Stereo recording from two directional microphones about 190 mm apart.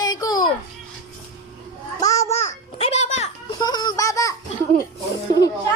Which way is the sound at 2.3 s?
35° left (ahead or behind).